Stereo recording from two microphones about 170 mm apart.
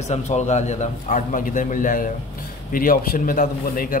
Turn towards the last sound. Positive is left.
turn(degrees=55)  # may be behind; listen again after turning